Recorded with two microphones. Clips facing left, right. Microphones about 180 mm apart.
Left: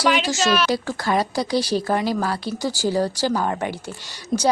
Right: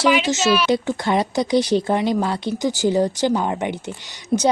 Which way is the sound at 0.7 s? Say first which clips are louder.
Right 3 dB; 20° right (ahead or behind).